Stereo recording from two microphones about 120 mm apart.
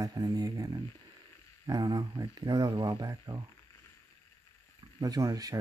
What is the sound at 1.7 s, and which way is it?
Speech, 35° right (ahead or behind).